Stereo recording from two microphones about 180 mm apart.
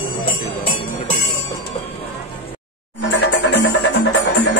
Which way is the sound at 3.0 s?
70° left (ahead or behind).